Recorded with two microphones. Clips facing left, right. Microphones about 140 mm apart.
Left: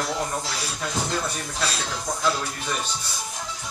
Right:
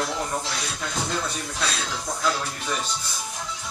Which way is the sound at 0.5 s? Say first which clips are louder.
Left 1 dB; centre (ahead or behind).